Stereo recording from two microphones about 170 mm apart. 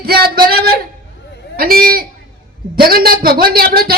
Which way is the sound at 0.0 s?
65° right (ahead or behind).